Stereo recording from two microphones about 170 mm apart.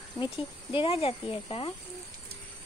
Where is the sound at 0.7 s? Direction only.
35° left (ahead or behind).